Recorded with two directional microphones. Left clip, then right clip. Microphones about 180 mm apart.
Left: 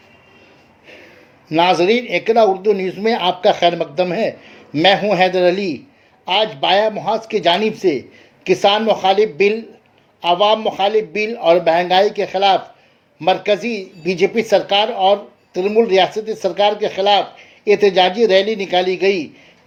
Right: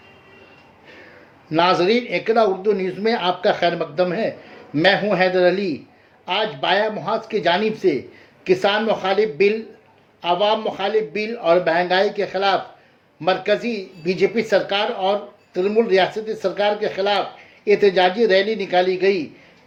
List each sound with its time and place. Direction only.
1.5 s speech: 25° left (ahead or behind)